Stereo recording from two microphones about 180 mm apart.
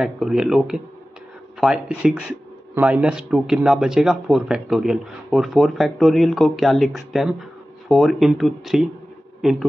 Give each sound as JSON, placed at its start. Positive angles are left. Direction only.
{"t": 0.0, "sound": "a man's voice", "side_deg": -5}